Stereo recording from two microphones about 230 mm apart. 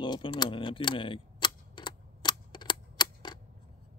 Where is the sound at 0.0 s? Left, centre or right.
Left.